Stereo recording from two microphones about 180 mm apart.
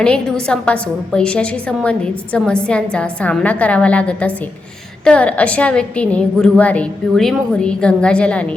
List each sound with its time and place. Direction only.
0.0 s a woman's voice: 5° left (ahead or behind)